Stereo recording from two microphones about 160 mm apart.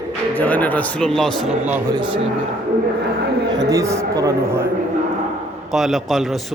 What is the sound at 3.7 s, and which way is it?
Speech, 20° right (ahead or behind).